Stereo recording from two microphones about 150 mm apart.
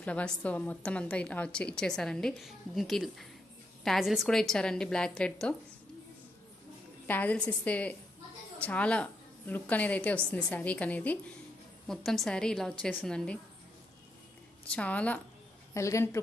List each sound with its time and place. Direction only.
0.0 s a woman's voice: 10° left (ahead or behind)
7.1 s a woman's voice: 10° left (ahead or behind)
14.7 s a woman's voice: 10° left (ahead or behind)
15.7 s speech: 20° left (ahead or behind)